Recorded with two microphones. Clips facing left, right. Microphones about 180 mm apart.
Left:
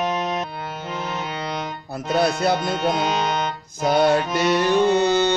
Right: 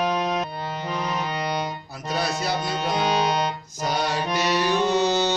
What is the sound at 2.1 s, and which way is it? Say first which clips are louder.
Speech: left 6 dB; 55° left (ahead or behind).